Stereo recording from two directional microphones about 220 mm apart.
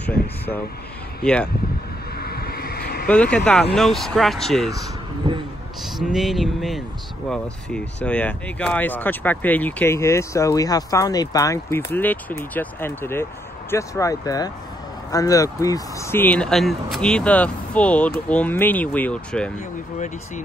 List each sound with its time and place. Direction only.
1.2 s speech: 5° left (ahead or behind)
2.1 s vehicle: 45° left (ahead or behind)
3.1 s speech: 5° left (ahead or behind)
4.7 s speech: 20° right (ahead or behind)
5.9 s speech: centre (ahead or behind)